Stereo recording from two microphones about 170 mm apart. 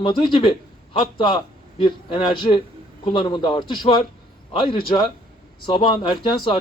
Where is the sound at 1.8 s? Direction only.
30° left (ahead or behind).